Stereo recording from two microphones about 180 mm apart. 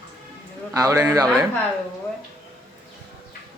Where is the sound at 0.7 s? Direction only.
20° right (ahead or behind).